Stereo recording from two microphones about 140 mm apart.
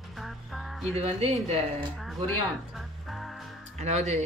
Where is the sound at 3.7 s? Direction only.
50° right (ahead or behind).